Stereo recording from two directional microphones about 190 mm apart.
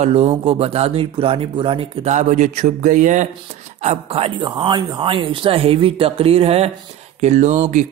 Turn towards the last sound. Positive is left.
turn(degrees=-40)  # may be behind; listen again after turning